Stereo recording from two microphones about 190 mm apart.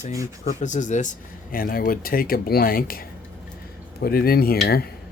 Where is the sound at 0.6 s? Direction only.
40° left (ahead or behind).